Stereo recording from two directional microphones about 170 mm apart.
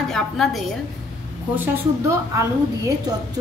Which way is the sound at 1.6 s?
15° right (ahead or behind).